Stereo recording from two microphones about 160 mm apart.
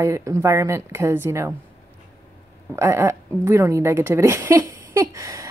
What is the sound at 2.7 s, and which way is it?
A woman's voice, 15° right (ahead or behind).